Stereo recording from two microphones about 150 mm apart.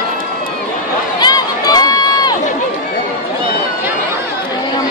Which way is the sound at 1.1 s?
25° left (ahead or behind).